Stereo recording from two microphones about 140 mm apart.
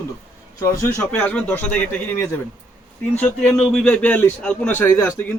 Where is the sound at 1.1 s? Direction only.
5° left (ahead or behind).